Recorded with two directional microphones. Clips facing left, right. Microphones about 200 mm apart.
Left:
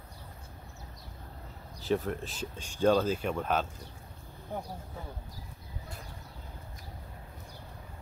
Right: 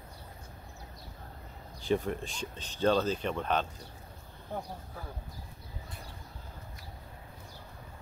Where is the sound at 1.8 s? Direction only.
Centre (ahead or behind).